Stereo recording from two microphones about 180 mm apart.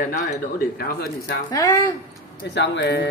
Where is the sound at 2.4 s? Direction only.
75° left (ahead or behind).